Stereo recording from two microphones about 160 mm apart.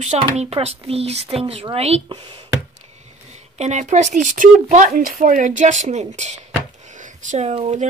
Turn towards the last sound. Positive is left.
turn(degrees=-40)  # may be behind; listen again after turning